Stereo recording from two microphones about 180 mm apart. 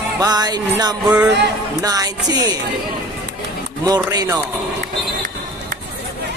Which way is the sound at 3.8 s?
20° right (ahead or behind).